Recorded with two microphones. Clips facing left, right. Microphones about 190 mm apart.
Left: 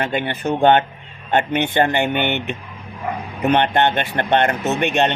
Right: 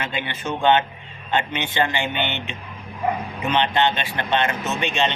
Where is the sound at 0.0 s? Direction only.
50° left (ahead or behind).